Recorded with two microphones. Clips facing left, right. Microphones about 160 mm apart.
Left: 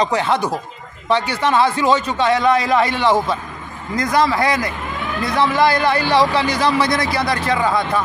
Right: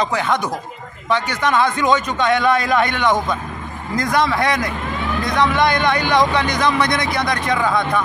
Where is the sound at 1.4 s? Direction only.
30° left (ahead or behind).